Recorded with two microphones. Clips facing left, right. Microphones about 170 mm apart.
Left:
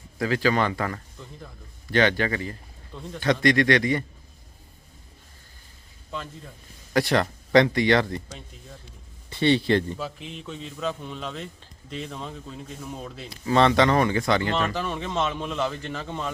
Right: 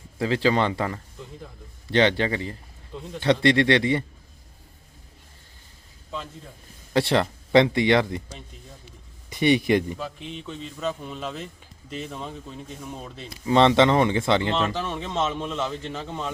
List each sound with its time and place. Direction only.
0.2 s speech: 25° right (ahead or behind)
6.9 s speech: 25° right (ahead or behind)
10.0 s a man's voice: centre (ahead or behind)
13.4 s speech: 20° right (ahead or behind)
14.8 s a man's voice: centre (ahead or behind)